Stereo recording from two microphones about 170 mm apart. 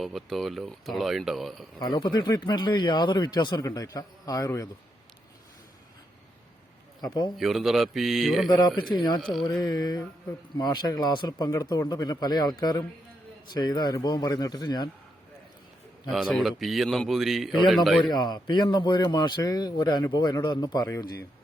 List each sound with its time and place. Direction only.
0.0 s speech: centre (ahead or behind)
1.8 s speech: 25° left (ahead or behind)
7.0 s speech: 25° left (ahead or behind)
7.3 s speech: centre (ahead or behind)
8.4 s speech: 25° left (ahead or behind)
16.0 s speech: centre (ahead or behind)
18.1 s speech: 25° left (ahead or behind)